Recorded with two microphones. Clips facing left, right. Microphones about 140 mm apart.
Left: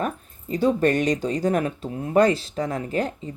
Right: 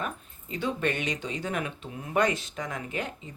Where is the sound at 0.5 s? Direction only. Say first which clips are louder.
Left 9 dB; 40° left (ahead or behind).